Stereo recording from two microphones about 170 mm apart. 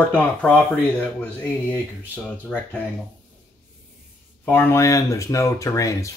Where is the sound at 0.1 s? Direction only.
5° left (ahead or behind).